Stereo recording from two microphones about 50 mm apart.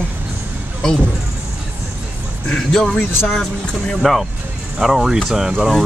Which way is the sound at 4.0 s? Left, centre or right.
Centre.